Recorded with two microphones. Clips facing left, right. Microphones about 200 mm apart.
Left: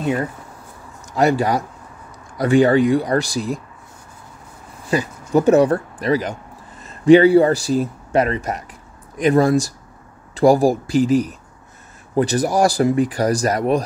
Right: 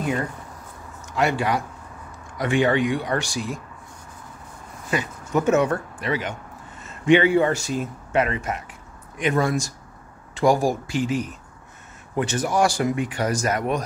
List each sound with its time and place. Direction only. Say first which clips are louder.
1.1 s speech: left 5 dB; 40° left (ahead or behind)
4.9 s speech: left 6 dB; 35° left (ahead or behind)